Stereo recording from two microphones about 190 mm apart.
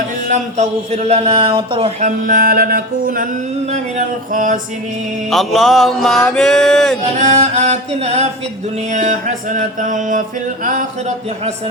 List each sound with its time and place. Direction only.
0.3 s a man's voice: 40° right (ahead or behind)
3.7 s mantra: 40° right (ahead or behind)
5.3 s a sound: centre (ahead or behind)
7.2 s a man's voice: 35° right (ahead or behind)
8.9 s mantra: 40° right (ahead or behind)